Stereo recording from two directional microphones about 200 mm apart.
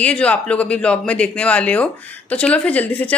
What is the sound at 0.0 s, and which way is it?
Speech, 5° left (ahead or behind).